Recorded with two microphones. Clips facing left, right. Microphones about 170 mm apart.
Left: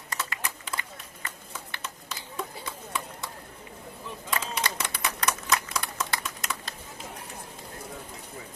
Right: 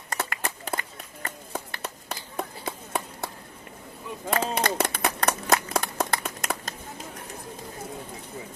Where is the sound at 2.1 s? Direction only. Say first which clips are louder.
Right 2 dB; 60° right (ahead or behind).